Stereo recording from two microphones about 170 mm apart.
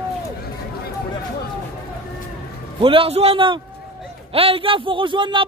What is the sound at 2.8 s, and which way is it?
A man's voice, 30° right (ahead or behind).